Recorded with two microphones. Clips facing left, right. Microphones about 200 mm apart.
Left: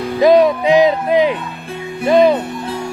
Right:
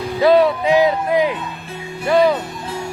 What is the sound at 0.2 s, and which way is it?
Speech, 15° left (ahead or behind).